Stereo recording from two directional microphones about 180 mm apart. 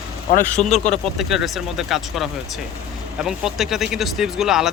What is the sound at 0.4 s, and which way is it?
Speech, 5° left (ahead or behind).